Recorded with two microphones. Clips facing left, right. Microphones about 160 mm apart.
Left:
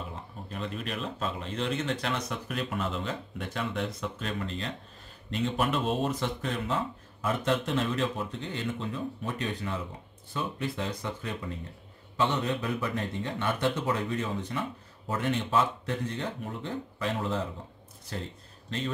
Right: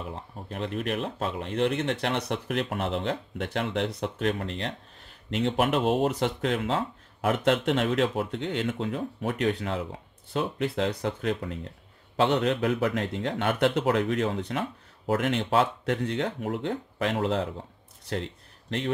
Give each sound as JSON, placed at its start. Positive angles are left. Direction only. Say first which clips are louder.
{"t": 0.5, "sound": "a man's voice", "louder": "right 6 dB", "side_deg": -65}
{"t": 18.1, "sound": "speech", "louder": "right 6 dB", "side_deg": -75}